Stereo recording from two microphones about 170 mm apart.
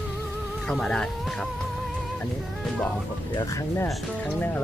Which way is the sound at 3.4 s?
15° left (ahead or behind).